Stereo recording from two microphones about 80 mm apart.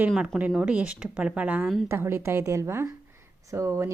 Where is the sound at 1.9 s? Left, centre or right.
Right.